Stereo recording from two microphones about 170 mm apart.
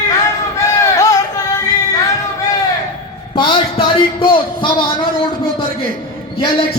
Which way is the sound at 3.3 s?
30° left (ahead or behind).